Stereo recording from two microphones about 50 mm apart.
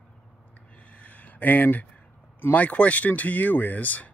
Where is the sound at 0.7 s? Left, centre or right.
Left.